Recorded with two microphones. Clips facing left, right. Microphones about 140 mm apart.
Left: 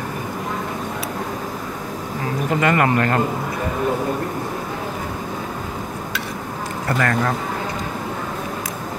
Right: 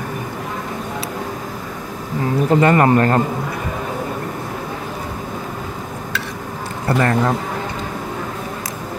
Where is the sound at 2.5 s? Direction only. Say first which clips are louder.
Right 5 dB; 35° right (ahead or behind).